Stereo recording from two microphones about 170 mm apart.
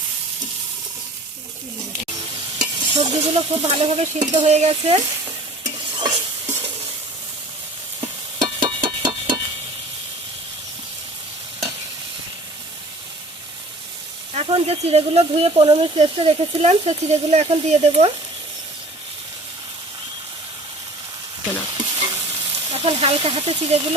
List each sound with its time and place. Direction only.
2.6 s stir: 40° right (ahead or behind)
8.0 s a sound: 30° right (ahead or behind)
14.3 s speech: 35° right (ahead or behind)
22.7 s speech: 35° right (ahead or behind)